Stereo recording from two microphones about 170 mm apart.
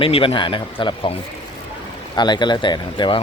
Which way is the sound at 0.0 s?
35° left (ahead or behind).